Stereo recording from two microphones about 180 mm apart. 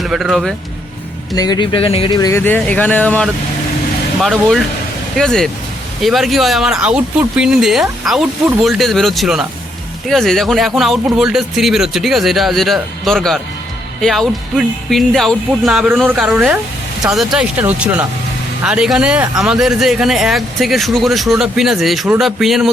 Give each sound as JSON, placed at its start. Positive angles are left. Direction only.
{"t": 0.0, "sound": "speech", "side_deg": 0}
{"t": 1.3, "sound": "speech", "side_deg": 20}